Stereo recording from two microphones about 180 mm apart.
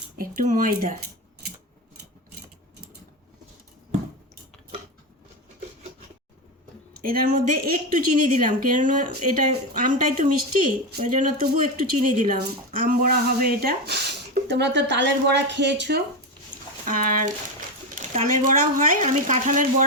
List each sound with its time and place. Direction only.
0.2 s a woman's voice: 50° right (ahead or behind)
7.0 s a woman's voice: 55° right (ahead or behind)
14.5 s speech: 75° right (ahead or behind)
16.8 s a woman's voice: 45° right (ahead or behind)